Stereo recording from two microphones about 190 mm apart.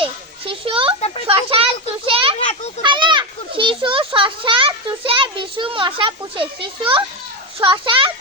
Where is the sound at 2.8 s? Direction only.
25° right (ahead or behind).